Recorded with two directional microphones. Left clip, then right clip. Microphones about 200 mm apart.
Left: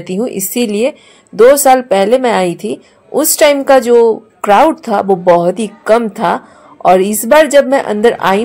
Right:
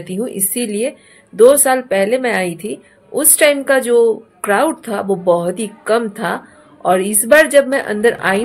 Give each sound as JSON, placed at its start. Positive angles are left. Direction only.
{"t": 0.1, "sound": "a woman's voice", "side_deg": 20}